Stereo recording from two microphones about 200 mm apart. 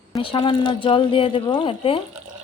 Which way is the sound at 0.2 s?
25° left (ahead or behind).